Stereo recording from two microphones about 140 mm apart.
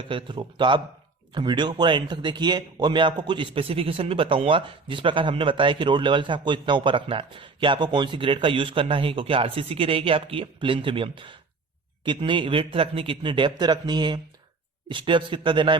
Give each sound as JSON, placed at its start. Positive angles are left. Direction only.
{"t": 0.1, "sound": "a man's voice", "side_deg": -35}